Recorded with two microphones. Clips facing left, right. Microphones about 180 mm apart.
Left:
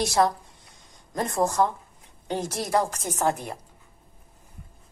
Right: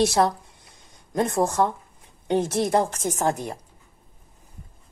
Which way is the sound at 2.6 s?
50° right (ahead or behind).